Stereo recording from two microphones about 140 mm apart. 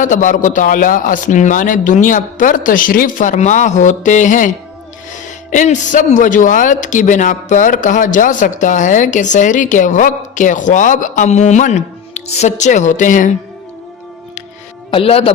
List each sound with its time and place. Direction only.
0.0 s a man's voice: 65° left (ahead or behind)
14.8 s speech: 40° left (ahead or behind)